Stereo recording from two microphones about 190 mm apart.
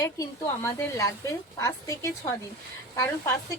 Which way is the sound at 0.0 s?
15° left (ahead or behind).